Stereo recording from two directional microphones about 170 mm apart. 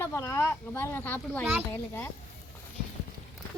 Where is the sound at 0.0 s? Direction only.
15° left (ahead or behind).